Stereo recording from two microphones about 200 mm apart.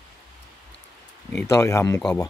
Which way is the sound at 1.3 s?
15° left (ahead or behind).